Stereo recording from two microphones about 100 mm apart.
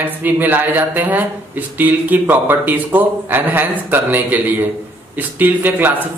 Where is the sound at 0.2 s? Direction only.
20° right (ahead or behind).